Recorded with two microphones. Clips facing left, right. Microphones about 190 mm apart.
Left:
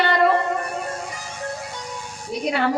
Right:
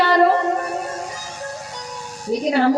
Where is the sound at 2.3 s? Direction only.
40° right (ahead or behind).